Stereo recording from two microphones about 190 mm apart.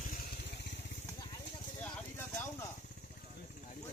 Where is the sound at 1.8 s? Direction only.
10° left (ahead or behind).